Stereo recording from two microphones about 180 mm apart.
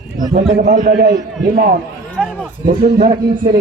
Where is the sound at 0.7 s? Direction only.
60° right (ahead or behind).